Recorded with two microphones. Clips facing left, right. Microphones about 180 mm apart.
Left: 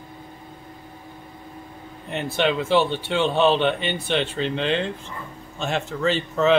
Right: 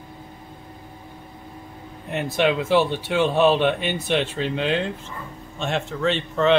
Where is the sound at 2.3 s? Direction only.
5° right (ahead or behind).